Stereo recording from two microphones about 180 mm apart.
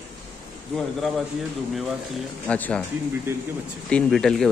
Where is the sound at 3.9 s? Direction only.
5° left (ahead or behind).